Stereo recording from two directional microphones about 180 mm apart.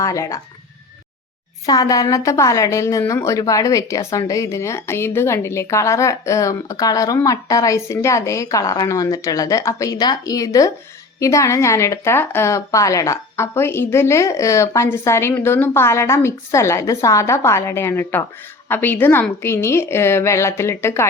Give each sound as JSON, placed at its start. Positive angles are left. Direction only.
{"t": 0.0, "sound": "a woman's voice", "side_deg": 15}
{"t": 1.6, "sound": "a woman's voice", "side_deg": 20}